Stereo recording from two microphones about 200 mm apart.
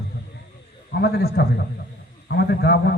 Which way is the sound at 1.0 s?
50° left (ahead or behind).